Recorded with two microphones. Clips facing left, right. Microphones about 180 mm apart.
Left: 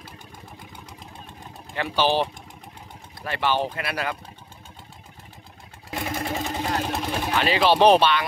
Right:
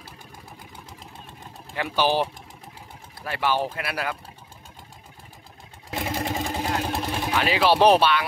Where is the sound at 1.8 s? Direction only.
10° right (ahead or behind).